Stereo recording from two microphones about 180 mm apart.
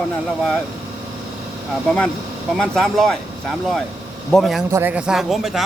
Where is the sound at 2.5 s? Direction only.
Centre (ahead or behind).